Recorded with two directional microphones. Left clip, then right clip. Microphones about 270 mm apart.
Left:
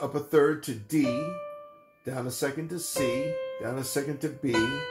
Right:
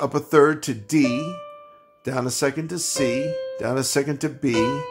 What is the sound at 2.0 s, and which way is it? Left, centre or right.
Speech, right.